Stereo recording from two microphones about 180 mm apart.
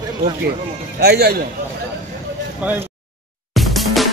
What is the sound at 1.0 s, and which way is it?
Speech, 60° right (ahead or behind).